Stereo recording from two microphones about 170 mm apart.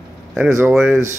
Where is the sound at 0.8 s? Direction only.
15° right (ahead or behind).